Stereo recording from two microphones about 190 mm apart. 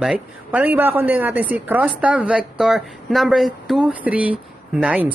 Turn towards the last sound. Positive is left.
turn(degrees=-5)  # may be behind; listen again after turning